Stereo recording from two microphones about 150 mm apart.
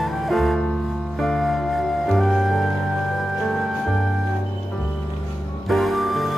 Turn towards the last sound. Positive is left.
turn(degrees=0)  # may be behind; listen again after turning